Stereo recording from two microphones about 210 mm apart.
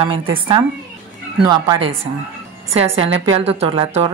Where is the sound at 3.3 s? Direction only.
30° right (ahead or behind).